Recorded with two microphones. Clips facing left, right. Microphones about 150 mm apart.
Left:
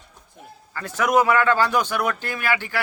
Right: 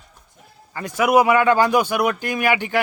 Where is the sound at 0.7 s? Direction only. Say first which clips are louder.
Right 3 dB; 15° right (ahead or behind).